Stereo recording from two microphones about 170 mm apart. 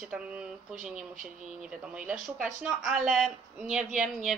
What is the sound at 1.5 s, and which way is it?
Speech, 5° right (ahead or behind).